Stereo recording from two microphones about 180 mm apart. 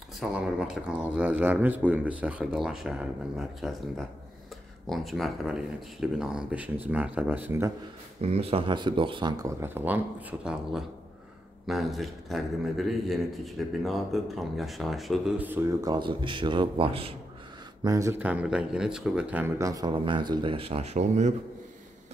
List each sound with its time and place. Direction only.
0.2 s speech: 5° right (ahead or behind)
4.8 s a man's voice: centre (ahead or behind)
8.2 s a man's voice: 35° right (ahead or behind)
17.8 s speech: 20° right (ahead or behind); by 21.3 s 35° right (ahead or behind)